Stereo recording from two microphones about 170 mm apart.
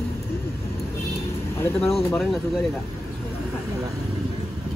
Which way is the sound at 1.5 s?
15° left (ahead or behind).